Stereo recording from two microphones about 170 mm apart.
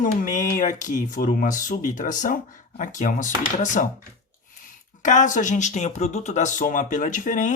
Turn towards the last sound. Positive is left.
turn(degrees=50)  # may be behind; listen again after turning